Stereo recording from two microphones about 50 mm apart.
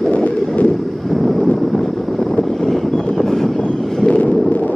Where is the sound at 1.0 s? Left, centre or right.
Centre.